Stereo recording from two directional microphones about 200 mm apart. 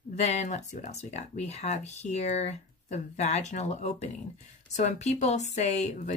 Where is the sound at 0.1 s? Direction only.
35° left (ahead or behind).